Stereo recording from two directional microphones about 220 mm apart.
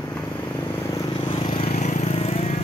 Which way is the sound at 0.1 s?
10° left (ahead or behind).